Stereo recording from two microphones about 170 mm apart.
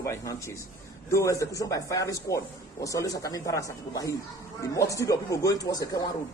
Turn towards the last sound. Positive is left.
turn(degrees=20)  # may be behind; listen again after turning